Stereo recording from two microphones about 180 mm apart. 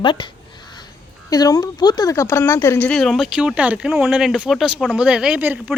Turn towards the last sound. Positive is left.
turn(degrees=-10)  # may be behind; listen again after turning